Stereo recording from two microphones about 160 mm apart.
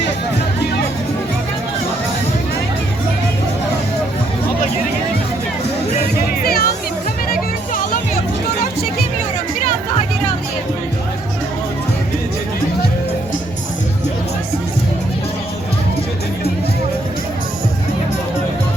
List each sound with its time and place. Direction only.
6.2 s music: 75° left (ahead or behind)
7.3 s music: 60° left (ahead or behind)